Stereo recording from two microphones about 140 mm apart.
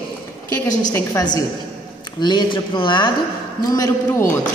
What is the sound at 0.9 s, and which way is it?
A woman's voice, 20° left (ahead or behind).